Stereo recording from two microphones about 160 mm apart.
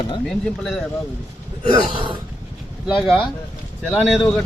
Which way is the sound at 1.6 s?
30° right (ahead or behind).